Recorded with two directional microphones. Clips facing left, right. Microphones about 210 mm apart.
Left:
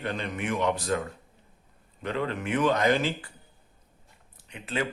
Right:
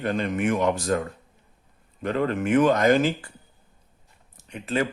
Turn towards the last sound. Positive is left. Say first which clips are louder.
# right 5 dB
turn(degrees=-45)  # may be behind; listen again after turning